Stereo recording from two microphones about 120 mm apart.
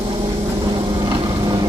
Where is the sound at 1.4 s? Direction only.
35° right (ahead or behind).